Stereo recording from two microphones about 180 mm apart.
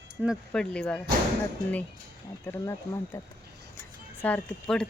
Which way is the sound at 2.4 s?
15° left (ahead or behind).